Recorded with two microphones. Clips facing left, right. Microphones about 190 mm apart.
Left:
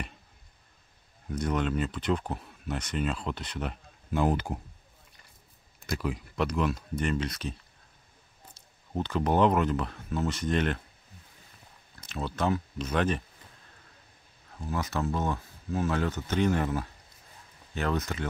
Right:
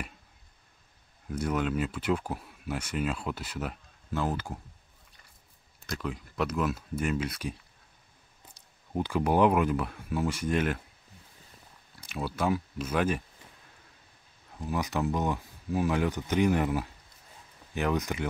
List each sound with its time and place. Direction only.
1.3 s speech: 5° right (ahead or behind)
4.1 s speech: 15° left (ahead or behind)
5.9 s speech: 5° left (ahead or behind)
8.5 s speech: 10° right (ahead or behind)
12.0 s speech: 10° right (ahead or behind)
14.6 s speech: 15° right (ahead or behind)